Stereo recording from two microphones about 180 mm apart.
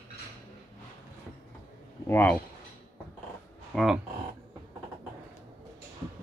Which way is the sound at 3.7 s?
Centre (ahead or behind).